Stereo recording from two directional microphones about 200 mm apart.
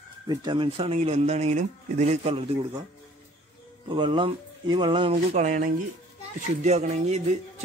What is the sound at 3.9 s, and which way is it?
Speech, 25° right (ahead or behind).